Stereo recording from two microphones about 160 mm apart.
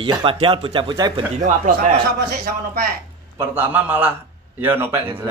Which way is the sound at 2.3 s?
70° right (ahead or behind).